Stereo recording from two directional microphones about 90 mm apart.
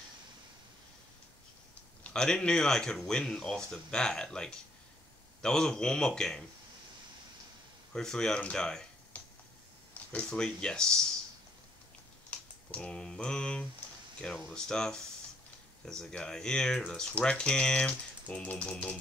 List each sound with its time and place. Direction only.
2.0 s speech: 10° left (ahead or behind)
7.9 s speech: 5° left (ahead or behind)
9.1 s finger snapping: 15° left (ahead or behind)
10.1 s speech: 10° left (ahead or behind)
12.3 s speech: 10° left (ahead or behind)